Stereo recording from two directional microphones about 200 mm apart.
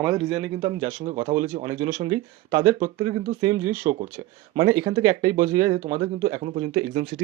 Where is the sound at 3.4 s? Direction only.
15° right (ahead or behind).